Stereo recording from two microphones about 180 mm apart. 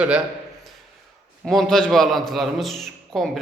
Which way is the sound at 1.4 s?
Centre (ahead or behind).